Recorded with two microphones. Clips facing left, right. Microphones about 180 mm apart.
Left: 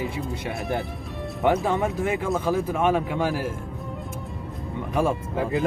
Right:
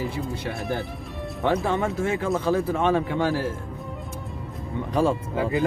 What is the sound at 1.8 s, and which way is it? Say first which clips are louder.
A man's voice: even; 20° left (ahead or behind).